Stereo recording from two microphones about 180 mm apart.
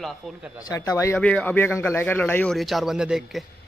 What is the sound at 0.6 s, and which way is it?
Speech, 20° left (ahead or behind).